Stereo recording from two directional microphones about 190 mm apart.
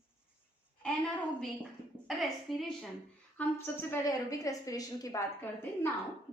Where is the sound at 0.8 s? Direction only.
5° left (ahead or behind).